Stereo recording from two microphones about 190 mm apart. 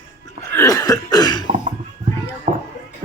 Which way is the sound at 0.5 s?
15° left (ahead or behind).